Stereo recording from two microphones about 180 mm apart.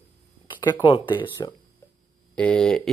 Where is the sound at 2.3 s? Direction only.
5° left (ahead or behind).